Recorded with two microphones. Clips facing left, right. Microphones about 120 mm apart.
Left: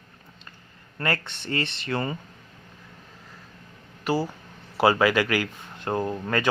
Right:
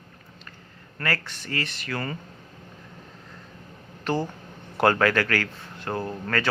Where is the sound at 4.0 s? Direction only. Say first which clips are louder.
Left 1 dB; 10° left (ahead or behind).